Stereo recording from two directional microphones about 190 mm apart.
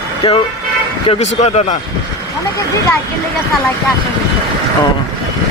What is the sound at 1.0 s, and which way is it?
Speech, 35° left (ahead or behind).